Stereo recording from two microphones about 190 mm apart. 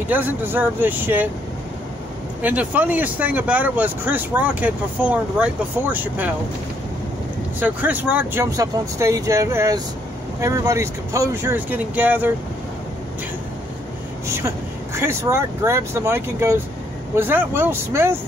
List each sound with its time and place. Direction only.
0.1 s speech: 10° right (ahead or behind)
2.4 s speech: 10° right (ahead or behind)
7.6 s speech: 10° right (ahead or behind)
14.2 s speech: 15° right (ahead or behind)